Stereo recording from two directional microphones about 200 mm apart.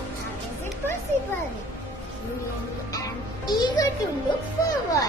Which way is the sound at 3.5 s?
20° left (ahead or behind).